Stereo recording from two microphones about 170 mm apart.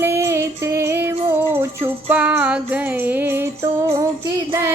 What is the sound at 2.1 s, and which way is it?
Child singing, 10° right (ahead or behind).